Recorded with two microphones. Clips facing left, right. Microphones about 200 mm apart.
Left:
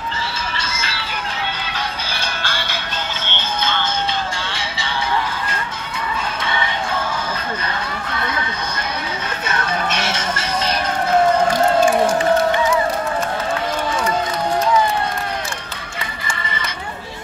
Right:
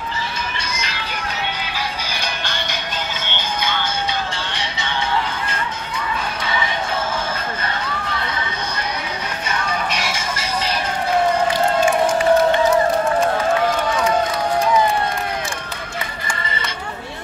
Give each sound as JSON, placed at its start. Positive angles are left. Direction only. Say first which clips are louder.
{"t": 0.6, "sound": "music", "louder": "even", "side_deg": -15}
{"t": 2.1, "sound": "music", "louder": "even", "side_deg": -20}
{"t": 10.0, "sound": "music", "louder": "left 2 dB", "side_deg": -10}